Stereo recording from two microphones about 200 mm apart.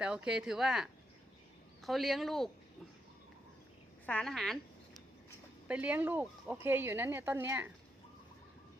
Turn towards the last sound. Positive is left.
turn(degrees=-10)  # may be behind; listen again after turning